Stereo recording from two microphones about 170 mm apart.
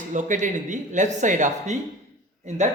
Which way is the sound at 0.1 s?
45° right (ahead or behind).